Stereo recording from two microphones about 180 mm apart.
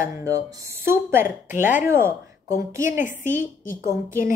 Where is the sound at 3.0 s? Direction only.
45° left (ahead or behind).